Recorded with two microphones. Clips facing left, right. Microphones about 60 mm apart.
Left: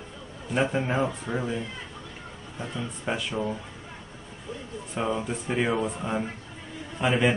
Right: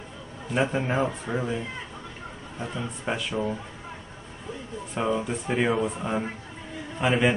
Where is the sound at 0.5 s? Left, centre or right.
Centre.